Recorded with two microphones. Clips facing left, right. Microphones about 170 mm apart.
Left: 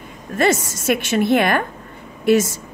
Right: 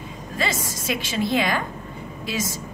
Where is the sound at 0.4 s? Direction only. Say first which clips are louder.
Left 9 dB; 55° left (ahead or behind).